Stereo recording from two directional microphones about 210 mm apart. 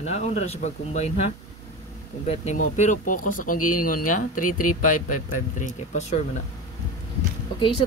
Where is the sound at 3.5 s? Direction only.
90° left.